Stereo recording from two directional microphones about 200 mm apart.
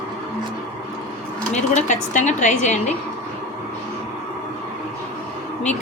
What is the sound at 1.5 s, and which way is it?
A woman's voice, 35° left (ahead or behind).